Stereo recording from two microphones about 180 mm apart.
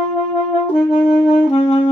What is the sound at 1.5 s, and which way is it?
Saxophone, 30° left (ahead or behind).